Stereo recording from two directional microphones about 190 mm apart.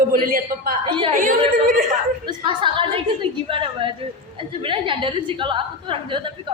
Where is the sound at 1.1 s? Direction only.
45° right (ahead or behind).